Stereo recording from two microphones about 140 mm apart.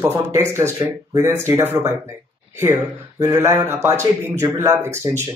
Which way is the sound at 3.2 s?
20° right (ahead or behind).